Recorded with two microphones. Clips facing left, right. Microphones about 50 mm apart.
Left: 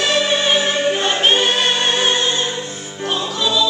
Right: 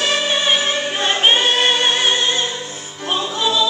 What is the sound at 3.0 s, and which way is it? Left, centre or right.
Music, centre.